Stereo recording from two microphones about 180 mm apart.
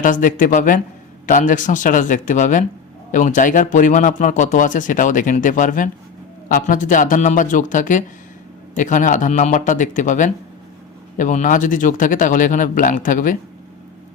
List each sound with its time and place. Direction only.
0.0 s a man's voice: 45° left (ahead or behind)